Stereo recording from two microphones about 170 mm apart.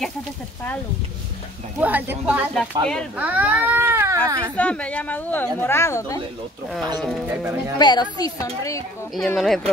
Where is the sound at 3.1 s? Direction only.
10° right (ahead or behind).